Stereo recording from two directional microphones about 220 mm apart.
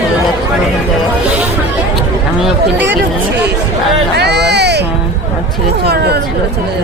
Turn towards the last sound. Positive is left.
turn(degrees=-45)  # may be behind; listen again after turning